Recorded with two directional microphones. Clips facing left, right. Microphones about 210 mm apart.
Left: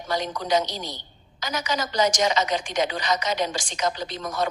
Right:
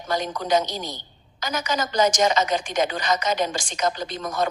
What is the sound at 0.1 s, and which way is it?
A woman's voice, 50° right (ahead or behind).